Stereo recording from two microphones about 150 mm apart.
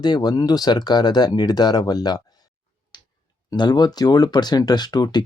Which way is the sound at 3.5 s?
30° left (ahead or behind).